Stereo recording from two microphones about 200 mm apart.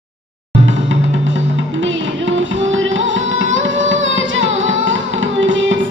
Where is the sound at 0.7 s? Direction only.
70° right (ahead or behind).